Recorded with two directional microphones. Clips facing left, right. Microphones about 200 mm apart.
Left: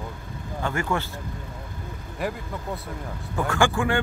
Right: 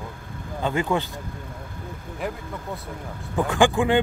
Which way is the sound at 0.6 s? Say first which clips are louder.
Right 3 dB; 15° right (ahead or behind).